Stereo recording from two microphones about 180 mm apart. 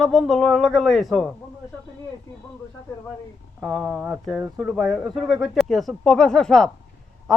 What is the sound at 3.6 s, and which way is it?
Speech, centre (ahead or behind).